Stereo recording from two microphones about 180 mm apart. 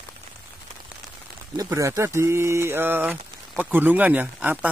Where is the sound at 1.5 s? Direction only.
15° right (ahead or behind).